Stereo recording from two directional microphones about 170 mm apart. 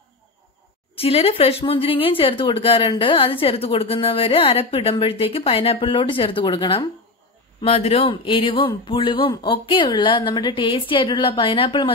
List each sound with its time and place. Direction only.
0.9 s speech: 35° left (ahead or behind)
7.6 s speech: 35° left (ahead or behind)